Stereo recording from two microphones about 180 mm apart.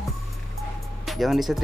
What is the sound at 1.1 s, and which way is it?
Speech, centre (ahead or behind).